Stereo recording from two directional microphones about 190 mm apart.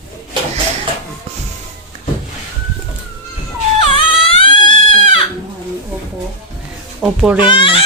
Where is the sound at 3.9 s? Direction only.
30° left (ahead or behind).